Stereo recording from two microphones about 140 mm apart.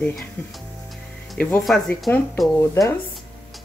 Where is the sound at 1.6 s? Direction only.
Centre (ahead or behind).